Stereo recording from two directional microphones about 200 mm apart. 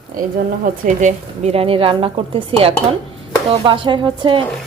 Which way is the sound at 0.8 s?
35° right (ahead or behind).